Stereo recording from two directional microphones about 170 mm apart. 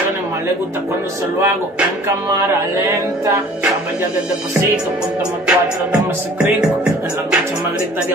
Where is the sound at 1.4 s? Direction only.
10° right (ahead or behind).